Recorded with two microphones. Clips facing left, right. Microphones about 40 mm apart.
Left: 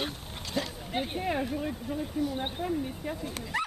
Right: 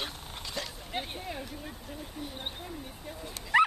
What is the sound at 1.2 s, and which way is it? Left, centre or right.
Speech, left.